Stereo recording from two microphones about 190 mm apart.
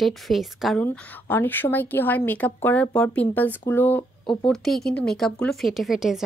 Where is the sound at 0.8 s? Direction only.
10° left (ahead or behind).